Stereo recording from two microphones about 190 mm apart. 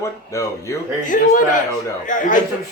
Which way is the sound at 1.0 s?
45° left (ahead or behind).